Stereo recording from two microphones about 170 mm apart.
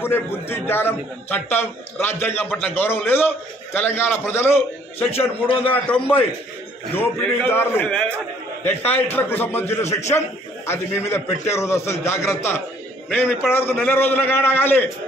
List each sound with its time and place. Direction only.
0.0 s a man's voice: 15° left (ahead or behind)